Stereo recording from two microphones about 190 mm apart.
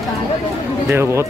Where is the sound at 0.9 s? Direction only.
15° right (ahead or behind).